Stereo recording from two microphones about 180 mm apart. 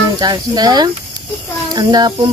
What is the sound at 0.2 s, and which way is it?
Speech, 20° right (ahead or behind).